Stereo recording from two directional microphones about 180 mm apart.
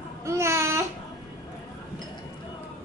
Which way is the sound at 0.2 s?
15° right (ahead or behind).